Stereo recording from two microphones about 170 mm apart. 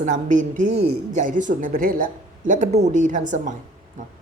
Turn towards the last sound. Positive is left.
turn(degrees=-45)  # may be behind; listen again after turning